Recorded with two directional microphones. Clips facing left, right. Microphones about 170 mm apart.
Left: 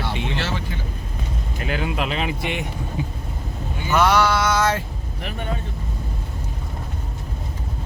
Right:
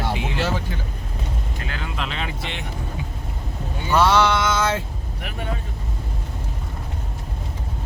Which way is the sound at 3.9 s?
25° right (ahead or behind).